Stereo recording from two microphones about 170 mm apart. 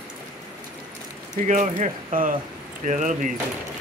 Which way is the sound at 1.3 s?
45° right (ahead or behind).